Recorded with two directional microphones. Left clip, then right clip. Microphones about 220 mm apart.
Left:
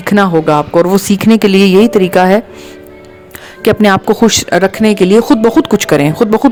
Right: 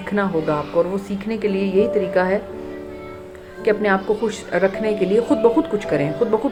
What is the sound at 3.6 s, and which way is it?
Speech, 50° left (ahead or behind).